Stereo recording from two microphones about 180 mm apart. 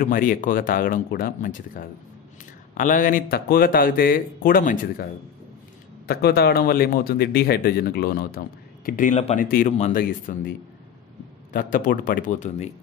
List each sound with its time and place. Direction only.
0.0 s speech: 50° left (ahead or behind)
6.0 s a man's voice: 60° left (ahead or behind); by 10.3 s 45° left (ahead or behind)
11.5 s speech: 50° left (ahead or behind)